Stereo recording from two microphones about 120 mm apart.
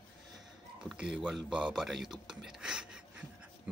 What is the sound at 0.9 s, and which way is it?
Speech, 5° right (ahead or behind).